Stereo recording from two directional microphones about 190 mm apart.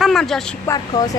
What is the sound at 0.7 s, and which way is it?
Speech, 20° left (ahead or behind).